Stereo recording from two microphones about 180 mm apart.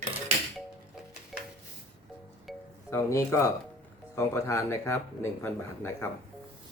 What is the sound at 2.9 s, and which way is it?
Speech, 15° left (ahead or behind).